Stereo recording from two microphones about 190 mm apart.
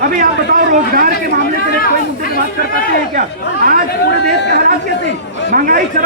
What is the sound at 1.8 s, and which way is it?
Speech, 50° left (ahead or behind).